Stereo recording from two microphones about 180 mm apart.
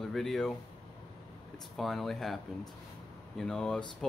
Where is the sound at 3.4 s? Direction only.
5° left (ahead or behind).